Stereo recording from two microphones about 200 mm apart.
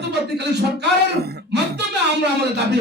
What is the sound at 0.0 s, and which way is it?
Speech, 55° right (ahead or behind).